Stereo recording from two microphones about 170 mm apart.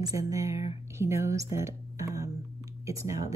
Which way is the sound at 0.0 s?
20° right (ahead or behind).